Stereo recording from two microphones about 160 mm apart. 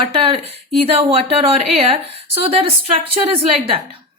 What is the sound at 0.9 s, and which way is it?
A woman's voice, 40° right (ahead or behind).